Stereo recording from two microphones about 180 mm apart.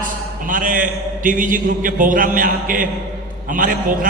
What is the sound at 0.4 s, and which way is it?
A man's voice, 50° right (ahead or behind).